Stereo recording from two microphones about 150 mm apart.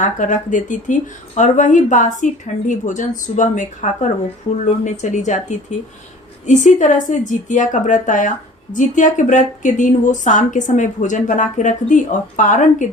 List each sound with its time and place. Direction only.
0.0 s speech: 60° left (ahead or behind)